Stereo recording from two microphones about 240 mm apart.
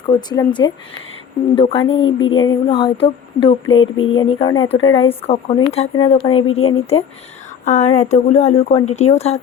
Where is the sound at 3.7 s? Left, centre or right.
Left.